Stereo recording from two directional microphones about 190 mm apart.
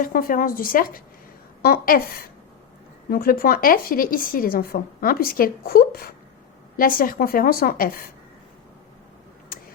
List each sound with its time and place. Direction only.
0.0 s a woman's voice: 50° left (ahead or behind)
3.1 s a woman's voice: 50° left (ahead or behind)